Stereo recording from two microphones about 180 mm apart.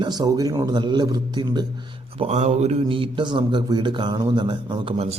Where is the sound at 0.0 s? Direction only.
25° right (ahead or behind).